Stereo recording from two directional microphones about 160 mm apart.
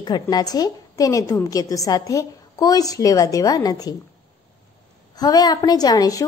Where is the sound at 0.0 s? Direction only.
25° left (ahead or behind).